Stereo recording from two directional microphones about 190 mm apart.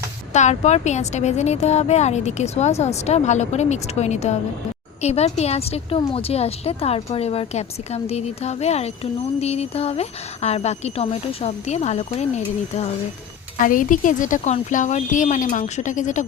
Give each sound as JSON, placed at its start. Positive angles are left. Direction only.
{"t": 0.3, "sound": "a woman's voice", "side_deg": 35}
{"t": 13.6, "sound": "a woman's voice", "side_deg": 45}